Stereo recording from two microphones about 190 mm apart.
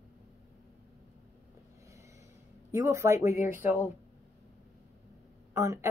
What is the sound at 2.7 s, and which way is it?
A woman's voice, 15° right (ahead or behind).